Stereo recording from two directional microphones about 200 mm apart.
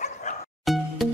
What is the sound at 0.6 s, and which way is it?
Music, centre (ahead or behind).